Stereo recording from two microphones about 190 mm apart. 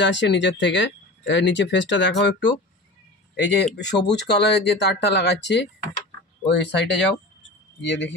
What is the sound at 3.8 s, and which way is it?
Speech, 65° left (ahead or behind).